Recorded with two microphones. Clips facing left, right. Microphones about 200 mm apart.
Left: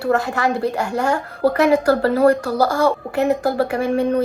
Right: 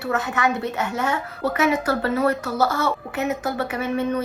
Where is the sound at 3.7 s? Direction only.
50° left (ahead or behind).